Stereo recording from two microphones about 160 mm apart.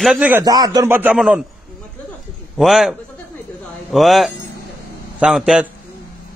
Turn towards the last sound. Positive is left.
turn(degrees=-5)  # may be behind; listen again after turning